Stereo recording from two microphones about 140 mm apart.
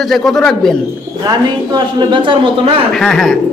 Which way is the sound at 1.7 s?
35° right (ahead or behind).